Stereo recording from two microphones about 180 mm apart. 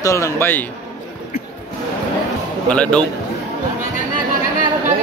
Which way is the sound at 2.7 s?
5° left (ahead or behind).